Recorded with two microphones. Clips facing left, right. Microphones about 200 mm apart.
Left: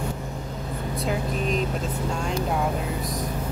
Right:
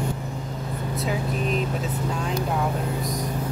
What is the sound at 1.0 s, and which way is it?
Speech, centre (ahead or behind).